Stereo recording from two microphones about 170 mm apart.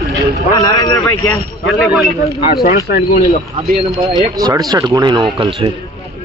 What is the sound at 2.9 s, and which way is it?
Speech, 60° left (ahead or behind).